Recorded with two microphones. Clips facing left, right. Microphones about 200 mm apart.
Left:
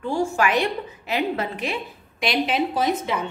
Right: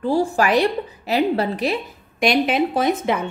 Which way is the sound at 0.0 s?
35° right (ahead or behind).